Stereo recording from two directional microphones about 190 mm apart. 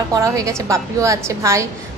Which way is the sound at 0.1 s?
15° right (ahead or behind).